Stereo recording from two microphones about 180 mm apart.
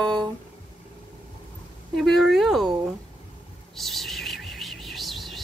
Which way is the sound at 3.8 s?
Centre (ahead or behind).